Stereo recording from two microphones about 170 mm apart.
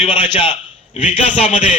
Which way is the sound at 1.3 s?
35° left (ahead or behind).